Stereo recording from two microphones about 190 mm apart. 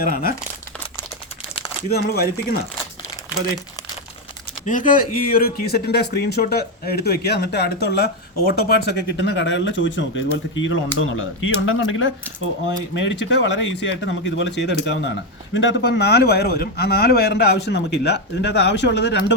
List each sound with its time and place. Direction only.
0.0 s speech: 50° left (ahead or behind)
1.9 s speech: 55° left (ahead or behind)
4.6 s speech: 45° left (ahead or behind); by 10.1 s 75° left (ahead or behind)
10.5 s speech: 85° left
13.0 s speech: 70° left (ahead or behind)